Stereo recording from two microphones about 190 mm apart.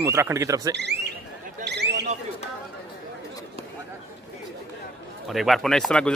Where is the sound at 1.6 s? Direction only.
60° right (ahead or behind).